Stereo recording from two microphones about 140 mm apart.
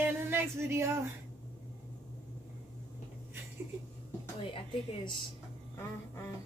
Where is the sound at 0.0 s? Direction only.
15° right (ahead or behind).